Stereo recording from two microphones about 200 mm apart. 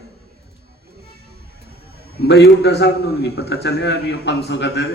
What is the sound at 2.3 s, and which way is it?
A man's voice, 55° left (ahead or behind).